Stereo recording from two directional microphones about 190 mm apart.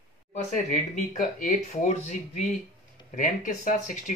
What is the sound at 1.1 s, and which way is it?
Speech, 40° left (ahead or behind).